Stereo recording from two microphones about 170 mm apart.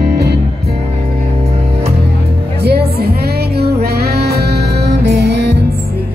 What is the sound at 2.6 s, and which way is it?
Music, 70° right (ahead or behind).